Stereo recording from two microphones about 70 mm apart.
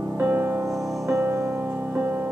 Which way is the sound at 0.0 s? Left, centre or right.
Right.